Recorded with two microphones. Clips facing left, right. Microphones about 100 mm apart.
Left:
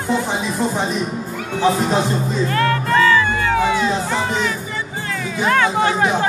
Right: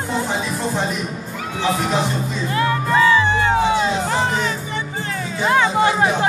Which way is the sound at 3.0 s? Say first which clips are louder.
Even; 20° right (ahead or behind).